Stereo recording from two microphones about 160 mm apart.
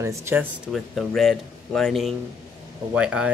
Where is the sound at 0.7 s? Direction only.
Centre (ahead or behind).